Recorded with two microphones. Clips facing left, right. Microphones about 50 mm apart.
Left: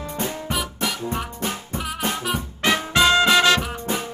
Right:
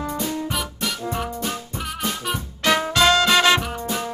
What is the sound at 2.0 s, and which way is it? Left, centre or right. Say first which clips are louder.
Music: left 2 dB; left.